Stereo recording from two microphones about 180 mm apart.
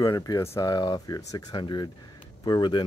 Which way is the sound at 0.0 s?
20° left (ahead or behind).